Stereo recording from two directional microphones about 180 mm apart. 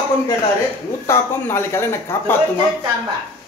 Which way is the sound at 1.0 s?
15° left (ahead or behind).